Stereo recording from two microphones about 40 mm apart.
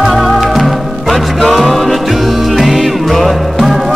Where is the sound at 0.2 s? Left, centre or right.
Centre.